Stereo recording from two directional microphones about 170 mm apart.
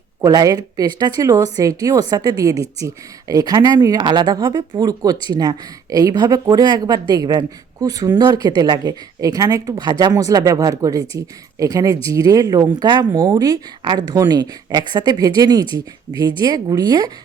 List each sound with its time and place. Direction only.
0.2 s speech: 20° right (ahead or behind)